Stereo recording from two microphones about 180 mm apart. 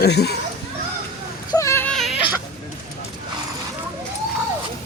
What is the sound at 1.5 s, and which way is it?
Baby cry, 15° left (ahead or behind).